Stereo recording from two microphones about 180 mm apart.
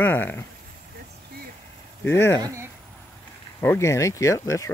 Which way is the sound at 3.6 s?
15° left (ahead or behind).